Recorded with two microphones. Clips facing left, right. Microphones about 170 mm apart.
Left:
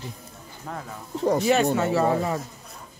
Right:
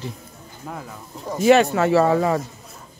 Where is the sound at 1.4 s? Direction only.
75° right (ahead or behind).